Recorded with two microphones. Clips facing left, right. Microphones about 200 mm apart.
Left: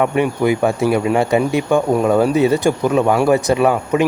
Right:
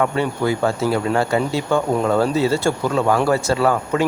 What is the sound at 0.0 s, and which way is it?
Speech, 15° left (ahead or behind).